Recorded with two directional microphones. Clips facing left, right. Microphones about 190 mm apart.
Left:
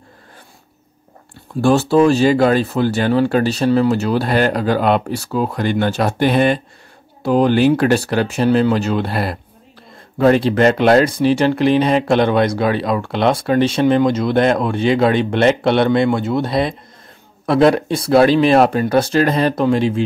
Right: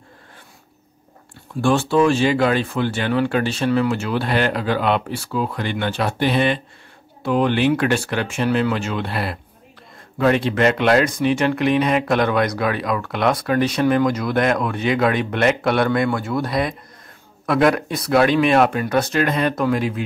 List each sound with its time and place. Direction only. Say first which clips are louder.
1.6 s speech: left 4 dB; 40° left (ahead or behind)